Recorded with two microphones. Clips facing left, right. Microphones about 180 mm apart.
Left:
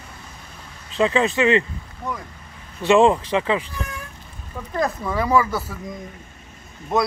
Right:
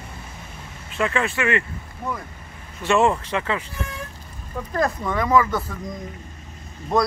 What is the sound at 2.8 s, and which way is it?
Speech, 15° left (ahead or behind).